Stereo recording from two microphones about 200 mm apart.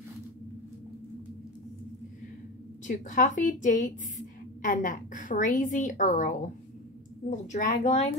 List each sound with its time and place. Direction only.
2.9 s a woman's voice: 40° left (ahead or behind)